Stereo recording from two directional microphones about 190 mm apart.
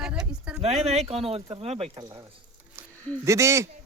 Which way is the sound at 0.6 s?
35° right (ahead or behind).